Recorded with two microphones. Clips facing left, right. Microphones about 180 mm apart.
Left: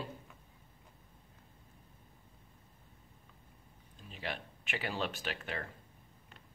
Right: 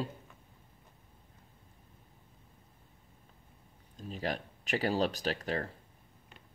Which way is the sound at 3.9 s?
40° right (ahead or behind).